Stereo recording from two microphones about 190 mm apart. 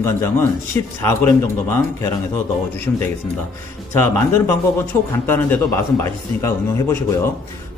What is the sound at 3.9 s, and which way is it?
A man's voice, 10° left (ahead or behind).